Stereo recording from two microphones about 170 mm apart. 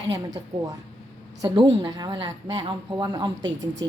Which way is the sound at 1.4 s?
25° right (ahead or behind).